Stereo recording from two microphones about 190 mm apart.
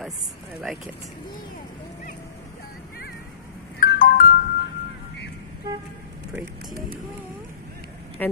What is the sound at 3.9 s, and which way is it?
Music, 45° left (ahead or behind).